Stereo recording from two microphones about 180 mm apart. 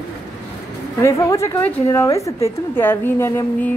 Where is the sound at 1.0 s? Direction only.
15° left (ahead or behind).